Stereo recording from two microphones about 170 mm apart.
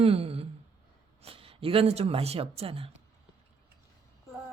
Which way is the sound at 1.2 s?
35° right (ahead or behind).